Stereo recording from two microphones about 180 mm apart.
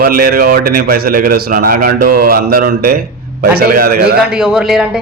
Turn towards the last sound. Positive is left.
turn(degrees=-5)  # may be behind; listen again after turning